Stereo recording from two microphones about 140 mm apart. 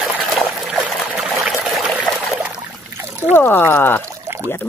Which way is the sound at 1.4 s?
5° right (ahead or behind).